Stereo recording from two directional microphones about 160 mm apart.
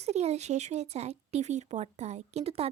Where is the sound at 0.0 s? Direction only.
45° right (ahead or behind).